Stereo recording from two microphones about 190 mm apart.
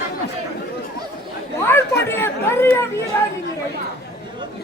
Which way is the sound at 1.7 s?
10° left (ahead or behind).